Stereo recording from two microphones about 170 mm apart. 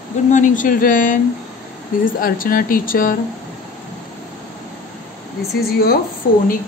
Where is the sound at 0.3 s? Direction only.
50° left (ahead or behind).